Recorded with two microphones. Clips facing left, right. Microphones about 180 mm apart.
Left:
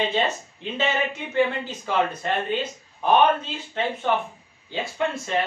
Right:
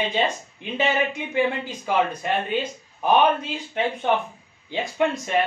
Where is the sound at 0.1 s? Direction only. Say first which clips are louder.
Even; 10° right (ahead or behind).